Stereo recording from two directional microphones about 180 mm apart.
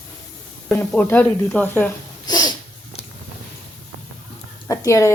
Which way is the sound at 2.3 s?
25° left (ahead or behind).